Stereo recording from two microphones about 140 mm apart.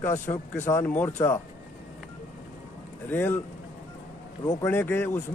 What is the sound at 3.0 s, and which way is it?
Speech, 15° left (ahead or behind).